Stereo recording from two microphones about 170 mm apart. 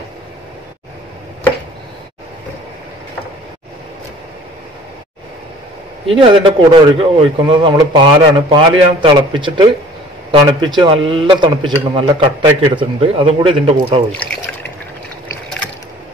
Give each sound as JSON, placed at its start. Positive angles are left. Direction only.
{"t": 6.0, "sound": "a man's voice", "side_deg": -30}